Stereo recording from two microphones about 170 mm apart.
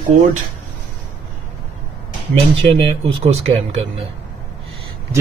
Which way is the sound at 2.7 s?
35° right (ahead or behind).